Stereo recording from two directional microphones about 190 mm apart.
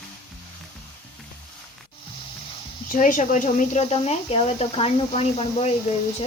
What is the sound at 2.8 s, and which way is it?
Speech, 45° left (ahead or behind).